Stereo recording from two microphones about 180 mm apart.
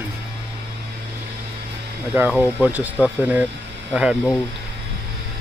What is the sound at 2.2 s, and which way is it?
Speech, 5° right (ahead or behind).